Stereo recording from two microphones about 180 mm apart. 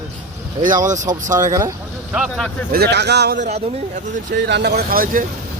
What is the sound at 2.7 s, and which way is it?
Speech, 65° right (ahead or behind).